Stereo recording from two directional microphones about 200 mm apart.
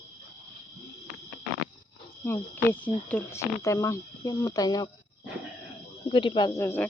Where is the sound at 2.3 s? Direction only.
10° left (ahead or behind).